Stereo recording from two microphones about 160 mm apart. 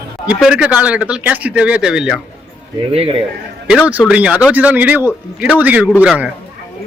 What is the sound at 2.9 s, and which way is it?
Speech, 40° right (ahead or behind).